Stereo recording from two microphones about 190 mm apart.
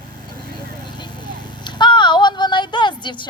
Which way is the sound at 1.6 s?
25° left (ahead or behind).